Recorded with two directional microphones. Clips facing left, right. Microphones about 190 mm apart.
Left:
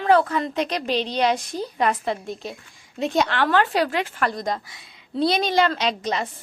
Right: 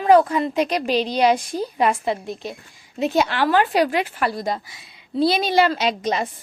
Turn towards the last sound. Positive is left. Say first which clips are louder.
# right 3 dB
turn(degrees=-10)  # may be behind; listen again after turning